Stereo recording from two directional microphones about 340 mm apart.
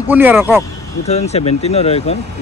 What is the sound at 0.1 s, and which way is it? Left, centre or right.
Speech, centre.